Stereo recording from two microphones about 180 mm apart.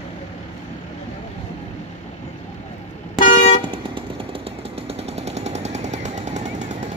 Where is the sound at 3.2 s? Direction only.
40° left (ahead or behind).